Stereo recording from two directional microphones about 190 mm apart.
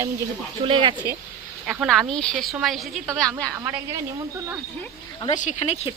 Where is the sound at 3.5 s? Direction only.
15° right (ahead or behind).